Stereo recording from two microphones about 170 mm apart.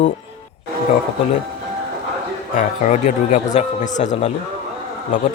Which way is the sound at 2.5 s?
45° left (ahead or behind).